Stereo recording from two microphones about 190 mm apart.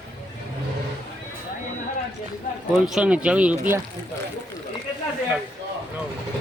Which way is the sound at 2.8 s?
5° right (ahead or behind).